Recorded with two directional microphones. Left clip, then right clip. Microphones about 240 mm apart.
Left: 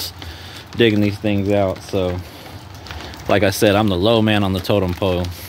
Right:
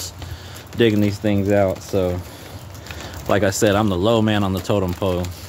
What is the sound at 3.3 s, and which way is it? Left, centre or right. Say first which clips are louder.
Speech: left 2 dB; centre.